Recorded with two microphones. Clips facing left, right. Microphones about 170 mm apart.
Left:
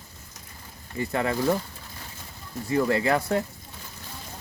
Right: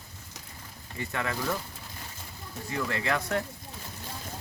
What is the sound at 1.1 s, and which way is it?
Speech, 30° left (ahead or behind).